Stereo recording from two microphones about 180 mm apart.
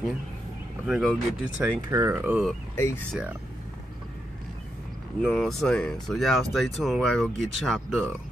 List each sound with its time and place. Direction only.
0.8 s speech: 5° right (ahead or behind)
1.8 s speech: 20° right (ahead or behind)
2.7 s speech: 15° left (ahead or behind)
3.1 s speech: 5° right (ahead or behind)
5.2 s speech: centre (ahead or behind)